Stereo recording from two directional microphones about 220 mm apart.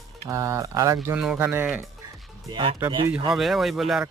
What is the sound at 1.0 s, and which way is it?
Speech, 5° right (ahead or behind).